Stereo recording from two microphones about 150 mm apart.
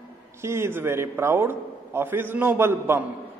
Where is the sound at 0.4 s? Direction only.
15° right (ahead or behind).